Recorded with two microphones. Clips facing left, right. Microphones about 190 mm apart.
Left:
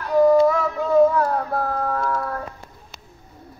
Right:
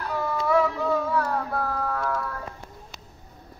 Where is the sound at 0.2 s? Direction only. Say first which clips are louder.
Left 8 dB; 40° left (ahead or behind).